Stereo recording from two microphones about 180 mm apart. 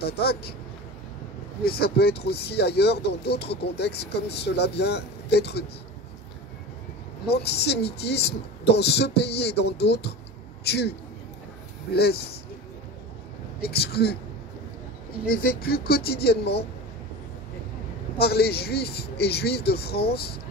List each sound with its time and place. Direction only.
0.0 s speech: 60° left (ahead or behind)
1.6 s speech: 60° left (ahead or behind)
7.2 s a man's voice: 65° left (ahead or behind)
13.6 s speech: 60° left (ahead or behind)
15.2 s speech: 55° left (ahead or behind)
18.2 s speech: 60° left (ahead or behind)